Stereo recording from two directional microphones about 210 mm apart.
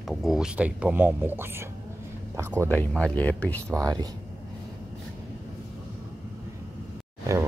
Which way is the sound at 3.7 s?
15° right (ahead or behind).